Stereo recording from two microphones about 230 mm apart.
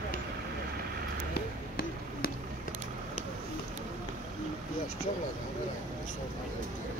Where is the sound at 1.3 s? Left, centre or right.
Left.